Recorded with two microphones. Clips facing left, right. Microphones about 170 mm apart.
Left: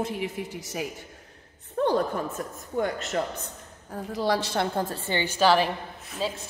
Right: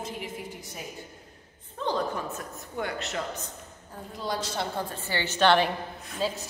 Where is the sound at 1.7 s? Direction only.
55° left (ahead or behind).